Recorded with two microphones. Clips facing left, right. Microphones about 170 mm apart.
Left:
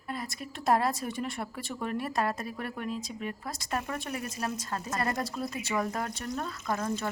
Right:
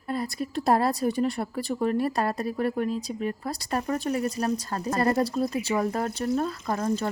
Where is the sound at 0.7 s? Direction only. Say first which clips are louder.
Right 4 dB; 35° right (ahead or behind).